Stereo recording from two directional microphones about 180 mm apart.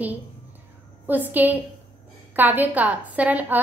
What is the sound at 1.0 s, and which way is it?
A woman's voice, 10° right (ahead or behind).